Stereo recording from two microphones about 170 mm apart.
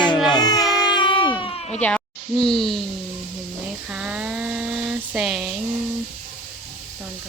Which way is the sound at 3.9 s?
5° right (ahead or behind).